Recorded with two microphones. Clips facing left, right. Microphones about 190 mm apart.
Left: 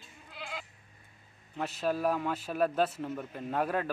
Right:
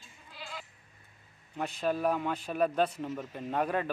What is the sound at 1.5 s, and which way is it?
A man's voice, 5° left (ahead or behind).